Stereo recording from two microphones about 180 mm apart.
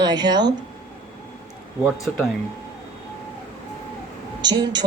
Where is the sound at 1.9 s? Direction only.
15° left (ahead or behind).